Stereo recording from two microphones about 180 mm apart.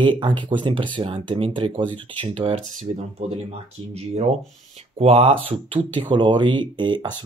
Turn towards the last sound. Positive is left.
turn(degrees=-25)  # may be behind; listen again after turning